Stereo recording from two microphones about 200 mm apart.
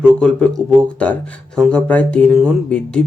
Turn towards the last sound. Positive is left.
turn(degrees=5)  # may be behind; listen again after turning